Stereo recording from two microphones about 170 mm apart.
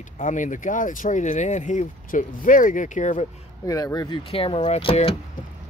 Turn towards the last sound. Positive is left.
turn(degrees=35)  # may be behind; listen again after turning